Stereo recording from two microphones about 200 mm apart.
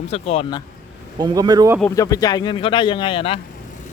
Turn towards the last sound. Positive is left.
turn(degrees=25)  # may be behind; listen again after turning